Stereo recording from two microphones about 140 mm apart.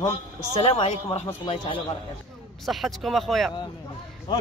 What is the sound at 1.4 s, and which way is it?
Speech, 40° left (ahead or behind).